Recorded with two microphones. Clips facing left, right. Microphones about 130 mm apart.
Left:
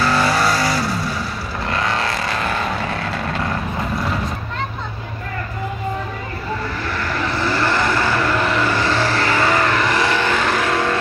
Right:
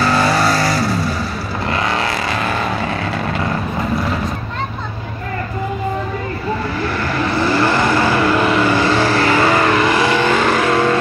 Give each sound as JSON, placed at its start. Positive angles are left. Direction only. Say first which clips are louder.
{"t": 0.1, "sound": "vehicle", "louder": "right 2 dB", "side_deg": -25}
{"t": 1.7, "sound": "vehicle", "louder": "right 2 dB", "side_deg": -10}
{"t": 7.4, "sound": "vehicle", "louder": "right 3 dB", "side_deg": -10}